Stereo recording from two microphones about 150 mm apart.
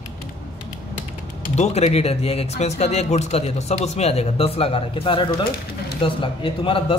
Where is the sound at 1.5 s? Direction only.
45° left (ahead or behind).